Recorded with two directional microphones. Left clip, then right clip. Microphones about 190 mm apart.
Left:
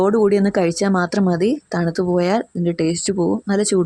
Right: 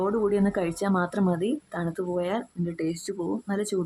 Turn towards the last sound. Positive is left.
turn(degrees=25)  # may be behind; listen again after turning